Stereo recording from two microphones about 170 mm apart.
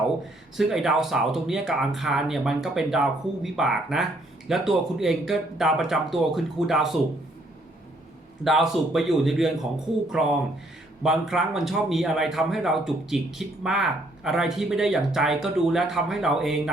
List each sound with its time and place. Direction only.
0.5 s speech: centre (ahead or behind)
8.4 s speech: centre (ahead or behind)